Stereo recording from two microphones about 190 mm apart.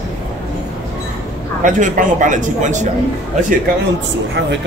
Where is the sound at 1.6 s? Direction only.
40° right (ahead or behind).